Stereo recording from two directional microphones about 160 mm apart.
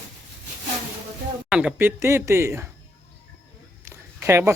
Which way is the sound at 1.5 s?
5° right (ahead or behind).